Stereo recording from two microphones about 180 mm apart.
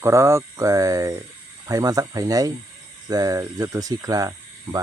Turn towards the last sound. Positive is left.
turn(degrees=-20)  # may be behind; listen again after turning